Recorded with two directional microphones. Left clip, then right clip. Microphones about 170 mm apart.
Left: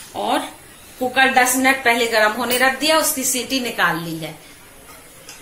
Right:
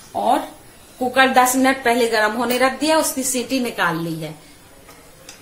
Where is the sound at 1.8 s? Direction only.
45° right (ahead or behind).